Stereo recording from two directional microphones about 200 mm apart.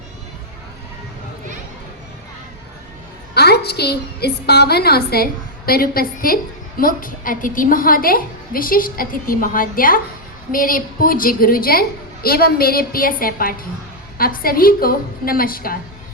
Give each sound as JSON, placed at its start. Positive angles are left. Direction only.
{"t": 3.3, "sound": "a woman's voice", "side_deg": 55}